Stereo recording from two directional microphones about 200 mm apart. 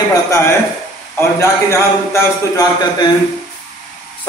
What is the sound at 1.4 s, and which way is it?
Speech, 15° left (ahead or behind).